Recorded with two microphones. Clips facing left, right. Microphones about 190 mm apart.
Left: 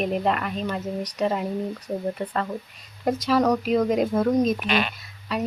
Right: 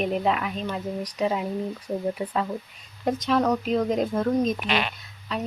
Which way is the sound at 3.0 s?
5° left (ahead or behind).